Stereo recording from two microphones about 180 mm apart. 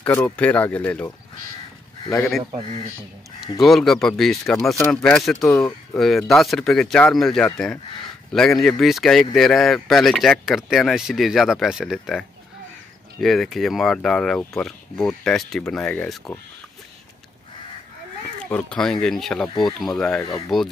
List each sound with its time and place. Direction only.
0.0 s speech: 10° left (ahead or behind)
3.5 s speech: centre (ahead or behind)
18.4 s speech: 5° left (ahead or behind)
19.4 s speech: 25° left (ahead or behind)
19.8 s speech: 5° left (ahead or behind)